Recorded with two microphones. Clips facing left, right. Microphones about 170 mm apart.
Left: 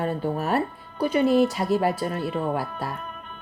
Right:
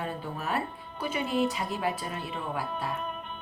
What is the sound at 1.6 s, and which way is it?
Speech, 65° left (ahead or behind).